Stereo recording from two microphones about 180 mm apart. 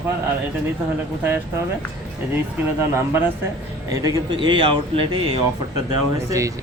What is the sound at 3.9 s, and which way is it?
Speech, 25° right (ahead or behind).